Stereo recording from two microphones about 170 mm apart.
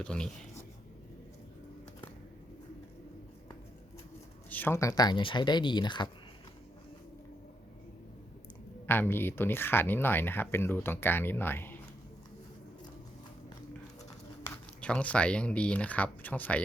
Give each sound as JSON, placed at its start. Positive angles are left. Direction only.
{"t": 0.0, "sound": "speech", "side_deg": 5}
{"t": 4.4, "sound": "speech", "side_deg": 10}
{"t": 8.9, "sound": "speech", "side_deg": 10}
{"t": 14.4, "sound": "speech", "side_deg": 10}